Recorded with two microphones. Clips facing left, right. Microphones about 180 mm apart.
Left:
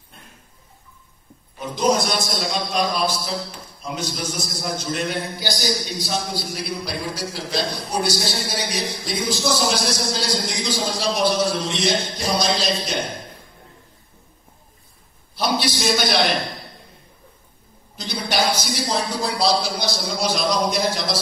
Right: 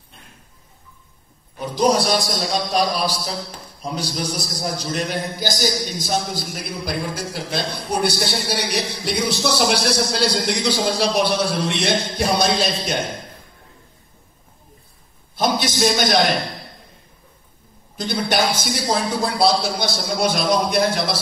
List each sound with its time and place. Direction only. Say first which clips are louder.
1.6 s a man's voice: right 2 dB; 35° right (ahead or behind); by 13.0 s 55° right (ahead or behind)
15.3 s a man's voice: right 2 dB; 45° right (ahead or behind)
17.9 s a man's voice: right 3 dB; 50° right (ahead or behind)